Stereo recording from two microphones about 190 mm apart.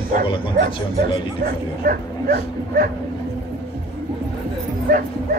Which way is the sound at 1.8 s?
55° right (ahead or behind).